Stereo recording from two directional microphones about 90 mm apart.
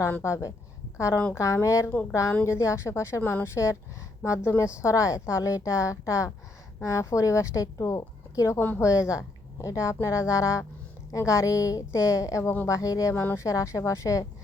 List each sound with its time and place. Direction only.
0.2 s speech: 30° left (ahead or behind)
1.1 s speech: 15° left (ahead or behind)
1.4 s speech: 35° left (ahead or behind)
8.5 s a woman's voice: 20° left (ahead or behind)
8.8 s speech: 35° left (ahead or behind)
13.1 s speech: 30° left (ahead or behind)